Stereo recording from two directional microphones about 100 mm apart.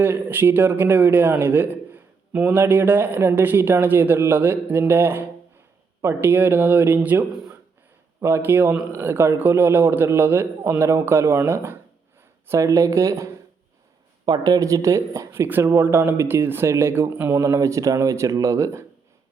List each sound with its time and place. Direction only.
0.0 s a man's voice: 20° right (ahead or behind)
14.3 s a man's voice: 40° right (ahead or behind)